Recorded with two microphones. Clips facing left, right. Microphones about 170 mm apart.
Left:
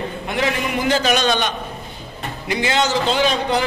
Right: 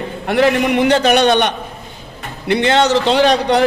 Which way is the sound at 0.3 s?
60° right (ahead or behind).